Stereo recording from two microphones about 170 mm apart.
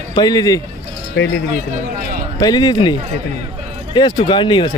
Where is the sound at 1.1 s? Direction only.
90° left.